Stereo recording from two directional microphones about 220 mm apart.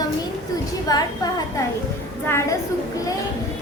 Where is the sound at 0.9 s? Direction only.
15° left (ahead or behind).